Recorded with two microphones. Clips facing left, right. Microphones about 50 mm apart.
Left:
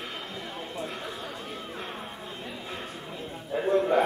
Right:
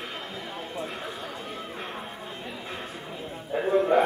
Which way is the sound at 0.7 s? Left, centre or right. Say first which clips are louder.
Right 1 dB; centre.